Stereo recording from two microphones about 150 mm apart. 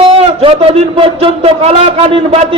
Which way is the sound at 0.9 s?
40° right (ahead or behind).